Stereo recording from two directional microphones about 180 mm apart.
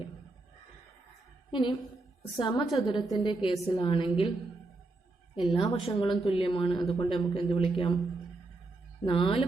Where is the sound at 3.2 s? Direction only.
25° left (ahead or behind).